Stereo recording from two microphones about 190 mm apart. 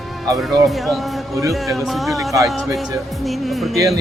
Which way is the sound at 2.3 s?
15° right (ahead or behind).